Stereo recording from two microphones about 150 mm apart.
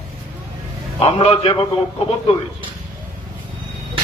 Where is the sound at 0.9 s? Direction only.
40° left (ahead or behind).